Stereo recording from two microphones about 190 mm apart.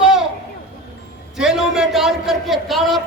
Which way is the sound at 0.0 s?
Centre (ahead or behind).